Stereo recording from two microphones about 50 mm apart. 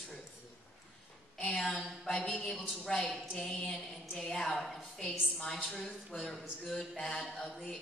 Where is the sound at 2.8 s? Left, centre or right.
Centre.